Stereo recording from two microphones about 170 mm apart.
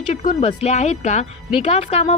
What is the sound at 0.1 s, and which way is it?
Speech, 45° left (ahead or behind).